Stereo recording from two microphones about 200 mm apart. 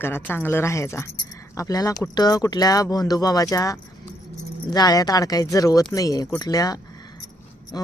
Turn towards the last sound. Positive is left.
turn(degrees=20)  # may be behind; listen again after turning